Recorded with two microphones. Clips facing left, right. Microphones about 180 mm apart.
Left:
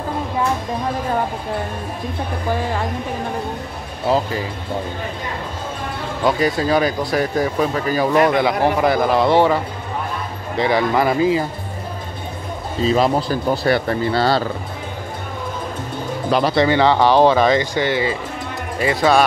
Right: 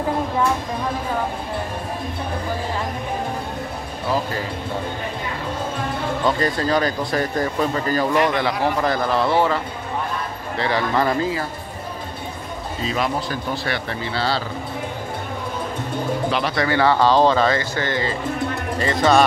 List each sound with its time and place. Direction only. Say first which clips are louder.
6.2 s speech: left 4 dB; 10° left (ahead or behind)
10.6 s speech: left 4 dB; 15° left (ahead or behind)
12.8 s speech: left 7 dB; 35° left (ahead or behind)
16.3 s speech: left 9 dB; 40° left (ahead or behind)
16.5 s speech: left 2 dB; 20° left (ahead or behind)